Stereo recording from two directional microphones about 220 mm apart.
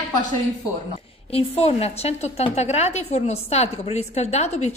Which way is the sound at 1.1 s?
25° left (ahead or behind).